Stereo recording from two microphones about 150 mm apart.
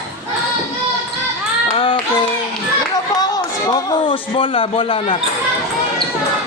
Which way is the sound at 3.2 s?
25° left (ahead or behind).